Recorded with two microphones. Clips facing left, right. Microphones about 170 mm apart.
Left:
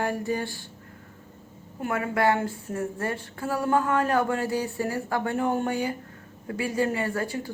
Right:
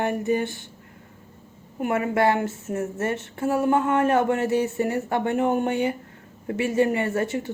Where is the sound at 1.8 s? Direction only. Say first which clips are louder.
Right 3 dB; 25° right (ahead or behind).